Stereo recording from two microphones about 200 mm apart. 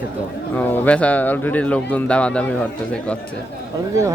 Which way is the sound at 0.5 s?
10° left (ahead or behind).